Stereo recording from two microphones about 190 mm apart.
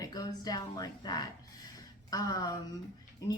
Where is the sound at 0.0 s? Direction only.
20° left (ahead or behind).